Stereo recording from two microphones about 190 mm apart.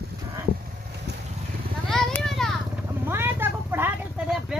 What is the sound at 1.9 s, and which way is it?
Vehicle, 5° left (ahead or behind).